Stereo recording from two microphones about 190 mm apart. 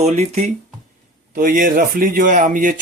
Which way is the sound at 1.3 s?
45° right (ahead or behind).